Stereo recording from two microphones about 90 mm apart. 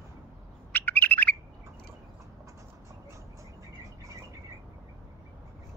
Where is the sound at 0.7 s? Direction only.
20° left (ahead or behind).